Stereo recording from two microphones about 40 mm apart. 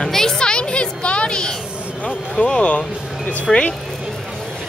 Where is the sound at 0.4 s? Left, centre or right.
Left.